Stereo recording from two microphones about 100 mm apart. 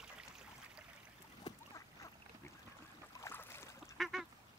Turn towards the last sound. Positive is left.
turn(degrees=0)  # may be behind; listen again after turning